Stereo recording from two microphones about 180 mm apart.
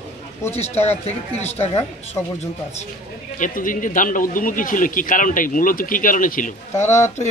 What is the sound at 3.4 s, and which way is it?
A man's voice, 45° left (ahead or behind).